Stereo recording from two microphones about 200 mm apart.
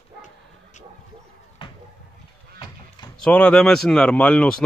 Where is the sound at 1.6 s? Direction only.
25° left (ahead or behind).